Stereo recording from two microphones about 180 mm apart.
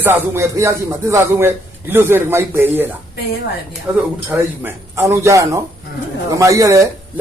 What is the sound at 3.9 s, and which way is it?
Speech, 10° right (ahead or behind).